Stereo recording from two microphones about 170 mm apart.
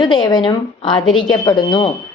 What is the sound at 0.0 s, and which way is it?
A woman's voice, 25° left (ahead or behind).